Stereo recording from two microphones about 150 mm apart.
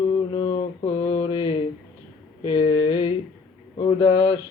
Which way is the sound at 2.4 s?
35° left (ahead or behind).